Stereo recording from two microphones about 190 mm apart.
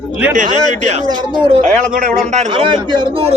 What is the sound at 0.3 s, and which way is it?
A man's voice, 40° right (ahead or behind).